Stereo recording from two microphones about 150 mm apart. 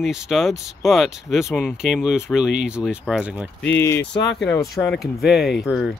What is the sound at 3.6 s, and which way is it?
Speech, 15° left (ahead or behind).